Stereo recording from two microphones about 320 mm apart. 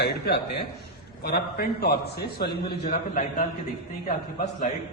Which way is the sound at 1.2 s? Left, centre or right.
Left.